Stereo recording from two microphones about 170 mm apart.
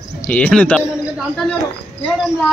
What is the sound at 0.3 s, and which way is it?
Speech, 10° left (ahead or behind).